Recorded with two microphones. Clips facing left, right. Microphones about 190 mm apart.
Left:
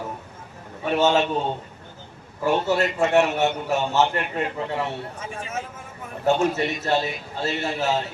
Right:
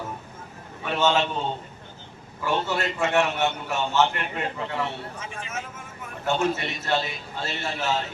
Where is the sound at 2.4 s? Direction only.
40° left (ahead or behind).